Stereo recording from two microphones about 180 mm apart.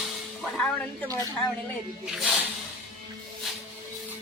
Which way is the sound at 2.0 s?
5° right (ahead or behind).